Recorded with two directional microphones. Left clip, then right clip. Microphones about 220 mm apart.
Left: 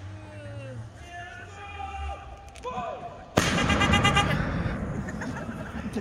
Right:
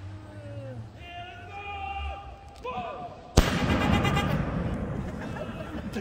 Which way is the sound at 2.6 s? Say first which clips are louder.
Even; 45° left (ahead or behind).